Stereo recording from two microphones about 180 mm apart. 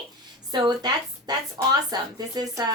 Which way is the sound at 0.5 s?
25° right (ahead or behind).